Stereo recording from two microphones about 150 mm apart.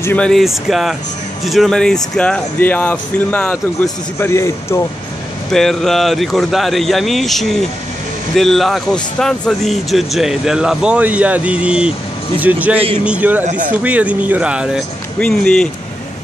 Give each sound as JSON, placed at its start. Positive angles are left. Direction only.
{"t": 0.0, "sound": "speech", "side_deg": 10}
{"t": 4.3, "sound": "speech", "side_deg": 20}
{"t": 5.5, "sound": "speech", "side_deg": 0}
{"t": 13.5, "sound": "speech", "side_deg": -60}
{"t": 13.8, "sound": "speech", "side_deg": -10}
{"t": 15.1, "sound": "speech", "side_deg": 5}